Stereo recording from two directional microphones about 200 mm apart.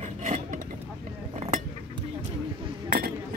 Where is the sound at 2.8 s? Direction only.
45° right (ahead or behind).